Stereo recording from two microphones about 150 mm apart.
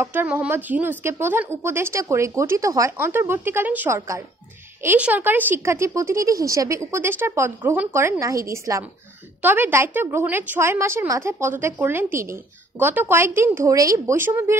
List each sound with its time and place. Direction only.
0.0 s a woman's voice: 15° right (ahead or behind)